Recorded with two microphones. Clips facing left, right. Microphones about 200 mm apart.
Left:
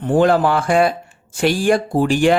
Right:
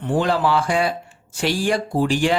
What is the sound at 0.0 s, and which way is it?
Speech, 50° left (ahead or behind).